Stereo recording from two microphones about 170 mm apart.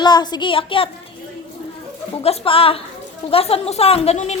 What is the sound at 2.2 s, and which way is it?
Speech, 35° left (ahead or behind).